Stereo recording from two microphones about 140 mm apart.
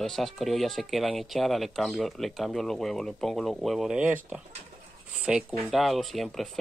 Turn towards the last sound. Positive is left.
turn(degrees=0)  # may be behind; listen again after turning